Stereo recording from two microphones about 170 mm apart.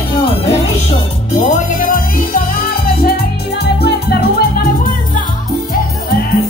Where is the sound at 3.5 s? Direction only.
70° left (ahead or behind).